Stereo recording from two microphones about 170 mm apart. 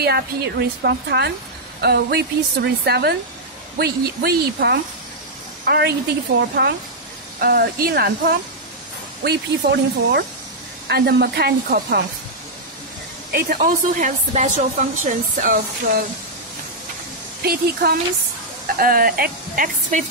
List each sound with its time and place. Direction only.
0.0 s a woman's voice: 70° right (ahead or behind)
7.3 s a woman's voice: 60° right (ahead or behind)
13.3 s speech: 60° right (ahead or behind)
17.4 s speech: 65° right (ahead or behind); by 20.1 s 50° right (ahead or behind)